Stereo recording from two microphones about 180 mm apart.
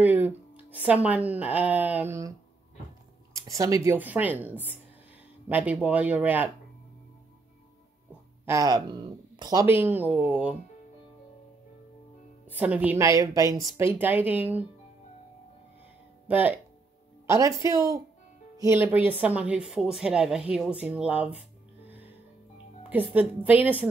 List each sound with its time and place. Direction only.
0.0 s speech: 10° right (ahead or behind)
3.3 s speech: 20° right (ahead or behind)
8.5 s speech: 20° right (ahead or behind)
12.4 s speech: 10° right (ahead or behind)
16.3 s a woman's voice: 10° right (ahead or behind)
23.1 s speech: 10° right (ahead or behind)